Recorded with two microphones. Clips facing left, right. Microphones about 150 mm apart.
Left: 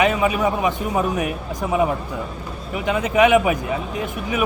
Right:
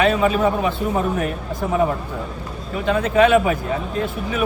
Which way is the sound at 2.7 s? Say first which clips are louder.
Right 2 dB; 15° left (ahead or behind).